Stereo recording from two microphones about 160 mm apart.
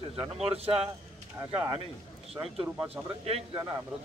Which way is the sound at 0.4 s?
40° right (ahead or behind).